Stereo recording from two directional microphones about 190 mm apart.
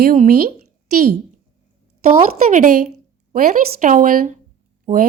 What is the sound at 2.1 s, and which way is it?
A woman's voice, 45° right (ahead or behind).